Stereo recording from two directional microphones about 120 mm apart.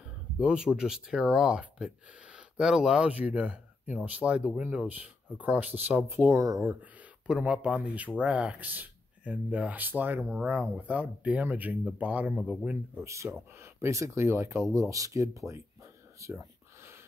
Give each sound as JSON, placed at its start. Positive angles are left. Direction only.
{"t": 0.4, "sound": "speech", "side_deg": -5}